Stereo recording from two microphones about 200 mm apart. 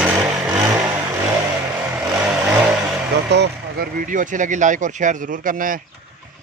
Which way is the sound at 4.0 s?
40° right (ahead or behind).